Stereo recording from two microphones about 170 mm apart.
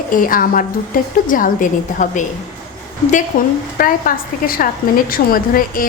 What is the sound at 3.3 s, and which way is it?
A woman's voice, 55° left (ahead or behind).